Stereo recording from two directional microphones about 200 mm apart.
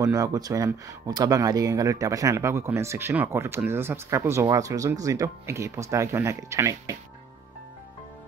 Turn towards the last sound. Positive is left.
turn(degrees=-15)  # may be behind; listen again after turning